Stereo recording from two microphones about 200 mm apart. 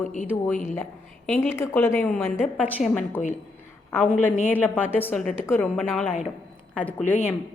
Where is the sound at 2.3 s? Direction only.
5° right (ahead or behind).